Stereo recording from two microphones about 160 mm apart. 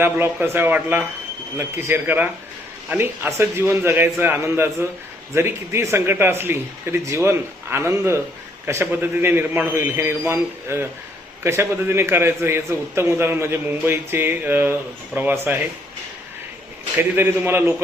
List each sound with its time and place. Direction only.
0.0 s a man's voice: 15° right (ahead or behind)
17.0 s a man's voice: 15° right (ahead or behind)